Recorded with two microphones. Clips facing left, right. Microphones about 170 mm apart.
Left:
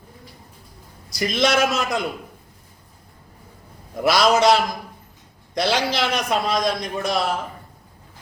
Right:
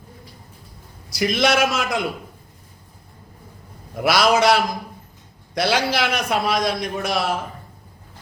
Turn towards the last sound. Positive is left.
turn(degrees=-5)  # may be behind; listen again after turning